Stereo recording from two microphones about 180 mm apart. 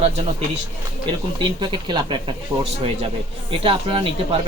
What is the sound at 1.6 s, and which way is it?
Speech, 25° right (ahead or behind).